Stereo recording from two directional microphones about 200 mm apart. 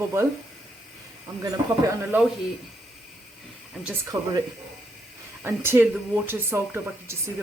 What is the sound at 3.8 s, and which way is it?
Speech, 15° right (ahead or behind).